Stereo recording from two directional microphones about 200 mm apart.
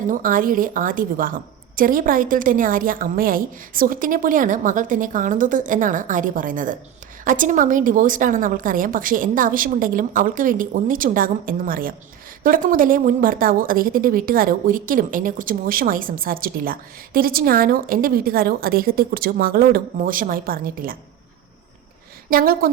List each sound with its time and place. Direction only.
0.1 s a woman's voice: 45° right (ahead or behind)
22.3 s a woman's voice: 45° right (ahead or behind)